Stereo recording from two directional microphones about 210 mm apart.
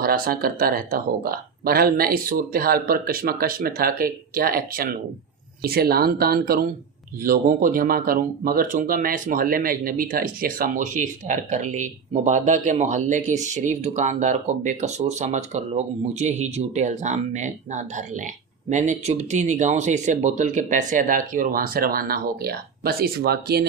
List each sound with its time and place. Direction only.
0.0 s speech: 45° right (ahead or behind)